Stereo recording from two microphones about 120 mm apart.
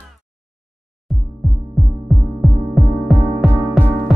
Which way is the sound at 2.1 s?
Centre (ahead or behind).